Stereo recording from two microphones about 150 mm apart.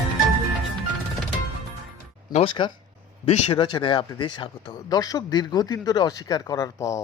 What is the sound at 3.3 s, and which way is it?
Speech, 45° left (ahead or behind).